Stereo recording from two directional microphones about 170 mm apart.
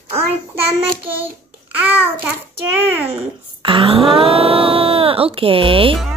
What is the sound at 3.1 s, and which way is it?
Speech, 35° right (ahead or behind).